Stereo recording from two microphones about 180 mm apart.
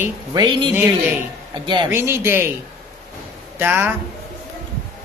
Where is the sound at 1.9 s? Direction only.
15° right (ahead or behind).